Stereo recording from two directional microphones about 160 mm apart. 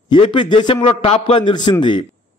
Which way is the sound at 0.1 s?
30° left (ahead or behind).